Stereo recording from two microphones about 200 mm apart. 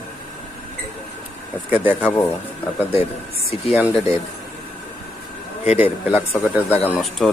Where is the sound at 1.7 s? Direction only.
10° right (ahead or behind).